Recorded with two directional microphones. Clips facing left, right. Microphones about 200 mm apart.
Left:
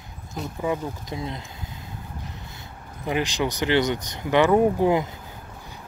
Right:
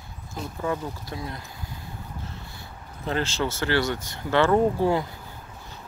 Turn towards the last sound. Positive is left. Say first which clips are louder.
# left 2 dB
turn(degrees=20)  # may be behind; listen again after turning